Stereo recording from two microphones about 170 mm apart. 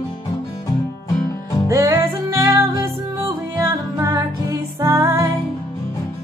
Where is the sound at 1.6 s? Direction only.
20° right (ahead or behind).